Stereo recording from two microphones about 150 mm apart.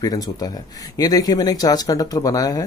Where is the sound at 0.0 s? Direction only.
25° left (ahead or behind).